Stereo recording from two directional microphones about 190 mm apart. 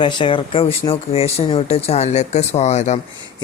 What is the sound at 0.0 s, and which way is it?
Speech, 25° left (ahead or behind).